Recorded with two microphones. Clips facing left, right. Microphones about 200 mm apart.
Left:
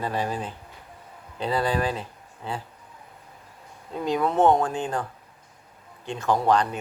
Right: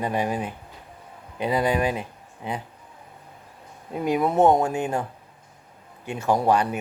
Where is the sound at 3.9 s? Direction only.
15° right (ahead or behind).